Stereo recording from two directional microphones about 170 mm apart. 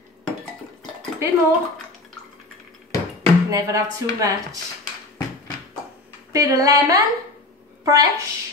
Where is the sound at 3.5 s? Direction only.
20° right (ahead or behind).